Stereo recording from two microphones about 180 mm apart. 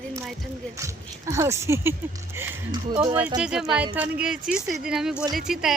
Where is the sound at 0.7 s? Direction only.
15° right (ahead or behind).